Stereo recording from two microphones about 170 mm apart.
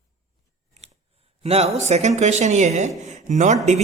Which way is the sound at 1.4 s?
35° right (ahead or behind).